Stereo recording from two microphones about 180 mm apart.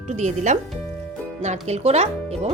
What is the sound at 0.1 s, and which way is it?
Speech, 40° right (ahead or behind).